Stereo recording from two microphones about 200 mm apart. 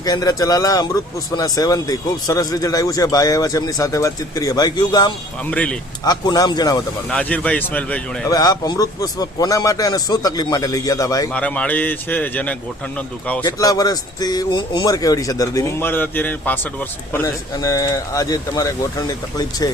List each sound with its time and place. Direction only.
0.0 s a man's voice: 20° left (ahead or behind)
5.5 s a man's voice: 5° left (ahead or behind)
6.1 s a man's voice: 20° left (ahead or behind)
7.1 s a man's voice: 5° left (ahead or behind)
8.3 s a man's voice: 20° left (ahead or behind)
11.3 s a man's voice: 5° left (ahead or behind)
13.4 s a man's voice: 20° left (ahead or behind)